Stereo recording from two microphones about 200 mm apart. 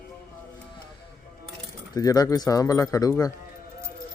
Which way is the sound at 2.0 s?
15° left (ahead or behind).